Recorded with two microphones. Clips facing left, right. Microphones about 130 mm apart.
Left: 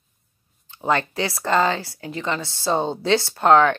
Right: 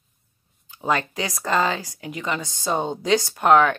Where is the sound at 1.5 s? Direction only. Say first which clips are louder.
Left 2 dB; 25° left (ahead or behind).